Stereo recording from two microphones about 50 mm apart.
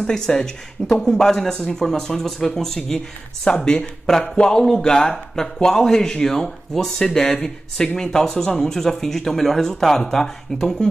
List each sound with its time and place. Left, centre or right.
0.0 s speech: centre